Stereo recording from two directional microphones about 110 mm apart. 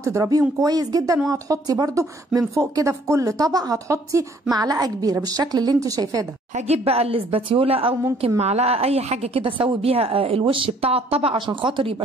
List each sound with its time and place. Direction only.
0.0 s speech: 30° right (ahead or behind)
6.5 s a woman's voice: 65° right (ahead or behind)
8.4 s a woman's voice: 75° right (ahead or behind); by 11.9 s 50° right (ahead or behind)